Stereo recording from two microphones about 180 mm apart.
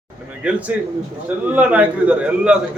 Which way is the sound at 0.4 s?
5° right (ahead or behind).